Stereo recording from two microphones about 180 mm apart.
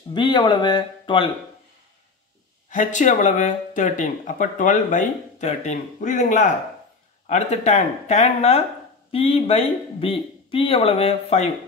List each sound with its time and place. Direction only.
0.1 s speech: 25° left (ahead or behind)
2.7 s speech: 45° left (ahead or behind)